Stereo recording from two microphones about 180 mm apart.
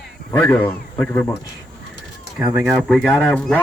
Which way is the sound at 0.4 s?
10° left (ahead or behind).